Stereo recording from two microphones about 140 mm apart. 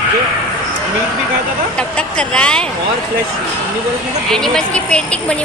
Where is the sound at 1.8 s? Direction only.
5° left (ahead or behind).